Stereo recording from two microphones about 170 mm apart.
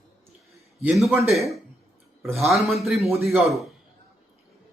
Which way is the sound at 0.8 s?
Centre (ahead or behind).